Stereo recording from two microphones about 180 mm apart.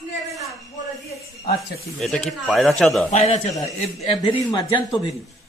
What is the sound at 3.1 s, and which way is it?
Speech, 40° left (ahead or behind).